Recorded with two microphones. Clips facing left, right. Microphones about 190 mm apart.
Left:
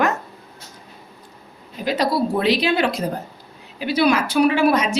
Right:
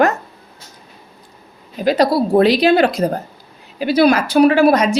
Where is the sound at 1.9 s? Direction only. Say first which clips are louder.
Right 6 dB; 40° right (ahead or behind).